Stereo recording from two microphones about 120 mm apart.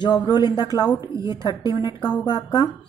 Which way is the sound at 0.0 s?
35° left (ahead or behind).